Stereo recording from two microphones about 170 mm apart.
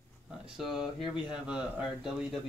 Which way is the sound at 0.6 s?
Centre (ahead or behind).